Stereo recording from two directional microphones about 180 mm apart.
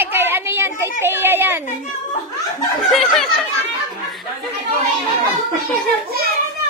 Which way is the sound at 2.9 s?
Centre (ahead or behind).